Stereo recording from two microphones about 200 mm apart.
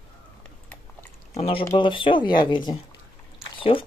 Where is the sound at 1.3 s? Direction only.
30° left (ahead or behind).